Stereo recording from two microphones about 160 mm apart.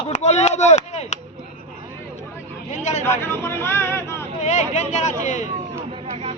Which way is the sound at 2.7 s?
45° left (ahead or behind).